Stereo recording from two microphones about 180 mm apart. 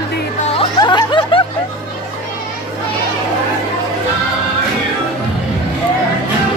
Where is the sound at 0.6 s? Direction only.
25° left (ahead or behind).